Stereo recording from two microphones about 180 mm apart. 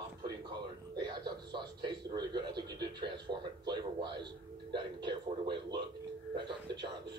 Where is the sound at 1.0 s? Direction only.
25° right (ahead or behind).